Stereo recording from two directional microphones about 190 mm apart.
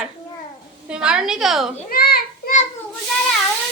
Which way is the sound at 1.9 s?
50° left (ahead or behind).